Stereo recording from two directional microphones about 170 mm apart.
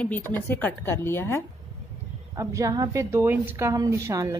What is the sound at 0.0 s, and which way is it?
A woman's voice, 10° left (ahead or behind).